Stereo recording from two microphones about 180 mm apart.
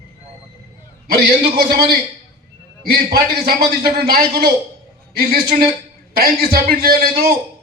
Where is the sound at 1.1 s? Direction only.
65° right (ahead or behind).